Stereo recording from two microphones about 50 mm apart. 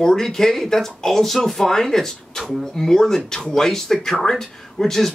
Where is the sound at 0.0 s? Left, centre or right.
Centre.